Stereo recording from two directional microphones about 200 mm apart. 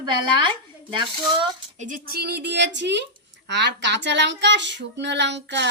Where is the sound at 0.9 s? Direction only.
25° right (ahead or behind).